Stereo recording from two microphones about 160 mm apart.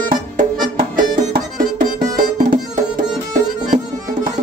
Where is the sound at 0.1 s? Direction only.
60° right (ahead or behind).